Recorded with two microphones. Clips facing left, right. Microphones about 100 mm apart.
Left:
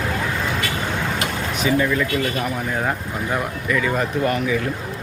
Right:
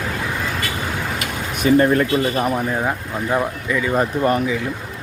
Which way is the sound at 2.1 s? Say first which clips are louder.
Right 4 dB; 30° right (ahead or behind).